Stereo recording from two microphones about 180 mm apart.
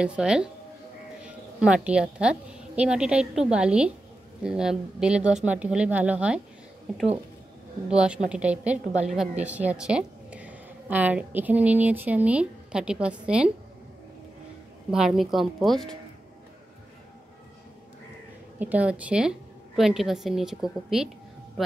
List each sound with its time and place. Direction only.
0.0 s a woman's voice: 5° right (ahead or behind)
7.9 s a woman's voice: 5° right (ahead or behind)
14.9 s a woman's voice: 5° right (ahead or behind)
18.6 s a woman's voice: 10° right (ahead or behind)